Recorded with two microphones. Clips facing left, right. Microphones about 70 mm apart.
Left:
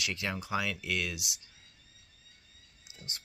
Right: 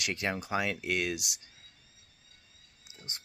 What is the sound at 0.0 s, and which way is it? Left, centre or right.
Speech, right.